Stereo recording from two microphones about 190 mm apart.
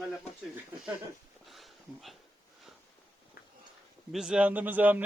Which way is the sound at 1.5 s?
Centre (ahead or behind).